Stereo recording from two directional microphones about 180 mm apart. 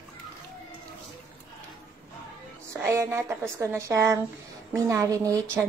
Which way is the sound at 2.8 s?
10° right (ahead or behind).